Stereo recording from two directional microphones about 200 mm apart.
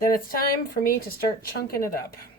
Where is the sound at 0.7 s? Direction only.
50° left (ahead or behind).